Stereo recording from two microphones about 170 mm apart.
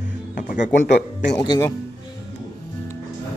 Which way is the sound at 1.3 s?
25° left (ahead or behind).